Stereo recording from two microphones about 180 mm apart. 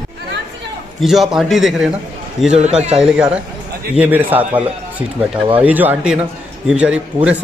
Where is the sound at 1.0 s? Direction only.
Centre (ahead or behind).